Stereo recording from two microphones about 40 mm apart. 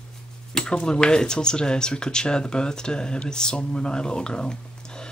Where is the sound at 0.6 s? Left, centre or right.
Left.